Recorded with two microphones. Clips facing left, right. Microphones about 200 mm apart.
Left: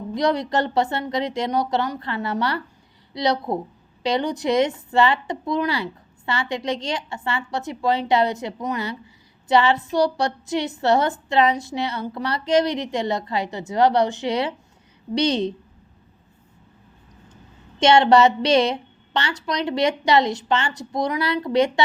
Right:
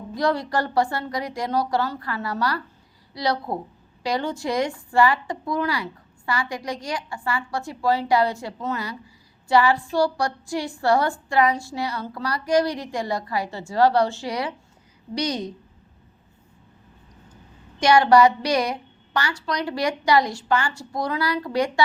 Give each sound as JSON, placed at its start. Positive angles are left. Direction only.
{"t": 0.1, "sound": "a woman's voice", "side_deg": 20}
{"t": 17.7, "sound": "a woman's voice", "side_deg": 25}